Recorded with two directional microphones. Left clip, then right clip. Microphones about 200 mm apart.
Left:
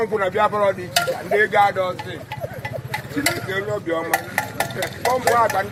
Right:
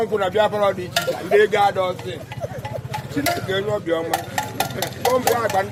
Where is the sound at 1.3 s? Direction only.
55° right (ahead or behind).